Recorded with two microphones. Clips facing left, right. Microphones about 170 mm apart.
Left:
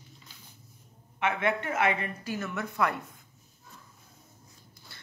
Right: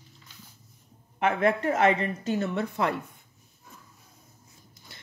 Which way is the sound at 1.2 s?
30° right (ahead or behind).